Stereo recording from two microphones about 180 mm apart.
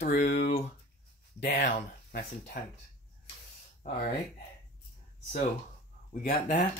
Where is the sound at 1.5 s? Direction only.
45° left (ahead or behind).